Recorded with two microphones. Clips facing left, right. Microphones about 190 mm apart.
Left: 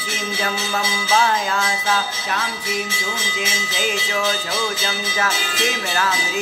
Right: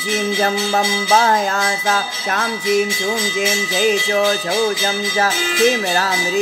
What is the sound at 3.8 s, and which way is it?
Music, 40° right (ahead or behind).